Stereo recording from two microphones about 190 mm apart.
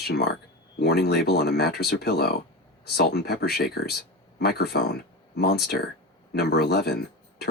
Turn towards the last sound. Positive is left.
turn(degrees=60)  # may be behind; listen again after turning